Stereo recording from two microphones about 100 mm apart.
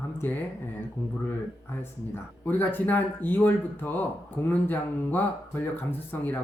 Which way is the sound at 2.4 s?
20° left (ahead or behind).